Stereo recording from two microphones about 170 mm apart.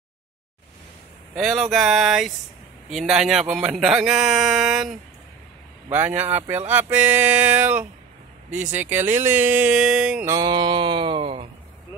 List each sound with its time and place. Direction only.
1.3 s a man's voice: centre (ahead or behind)
10.2 s music: 25° right (ahead or behind)